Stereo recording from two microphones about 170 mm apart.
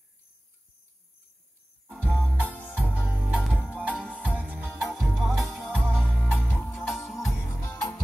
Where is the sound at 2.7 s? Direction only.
5° right (ahead or behind).